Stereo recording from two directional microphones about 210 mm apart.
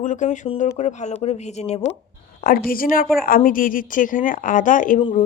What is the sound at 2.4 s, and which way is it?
Speech, 45° left (ahead or behind).